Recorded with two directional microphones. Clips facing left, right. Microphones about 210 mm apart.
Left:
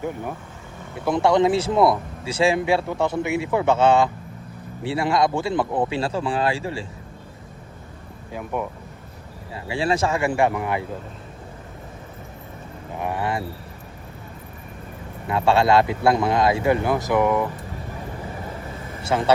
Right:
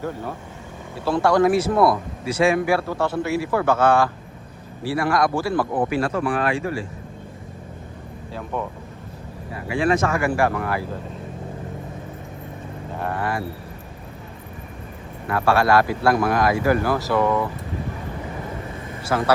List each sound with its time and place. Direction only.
0.9 s speech: 20° left (ahead or behind)
8.3 s speech: 10° left (ahead or behind)
9.5 s speech: 30° left (ahead or behind)
13.0 s speech: 15° left (ahead or behind)
15.3 s speech: 20° left (ahead or behind)
19.0 s speech: 25° left (ahead or behind)